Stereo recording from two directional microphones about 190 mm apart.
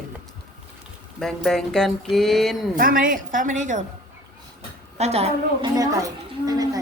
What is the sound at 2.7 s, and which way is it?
A woman's voice, 45° right (ahead or behind).